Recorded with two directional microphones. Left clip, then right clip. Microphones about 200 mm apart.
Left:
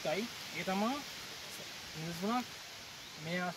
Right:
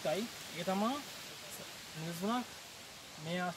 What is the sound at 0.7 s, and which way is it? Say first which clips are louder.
Speech: right 1 dB; 10° right (ahead or behind).